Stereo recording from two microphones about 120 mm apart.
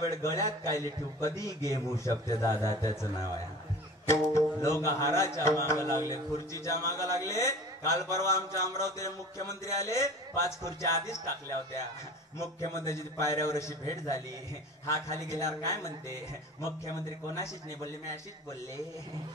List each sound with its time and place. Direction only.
0.0 s a man's voice: 25° left (ahead or behind)
15.2 s a man's voice: 25° left (ahead or behind)